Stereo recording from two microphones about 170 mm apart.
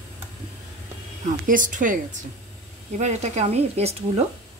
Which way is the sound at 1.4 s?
50° right (ahead or behind).